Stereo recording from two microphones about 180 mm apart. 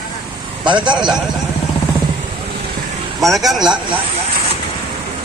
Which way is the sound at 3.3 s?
Centre (ahead or behind).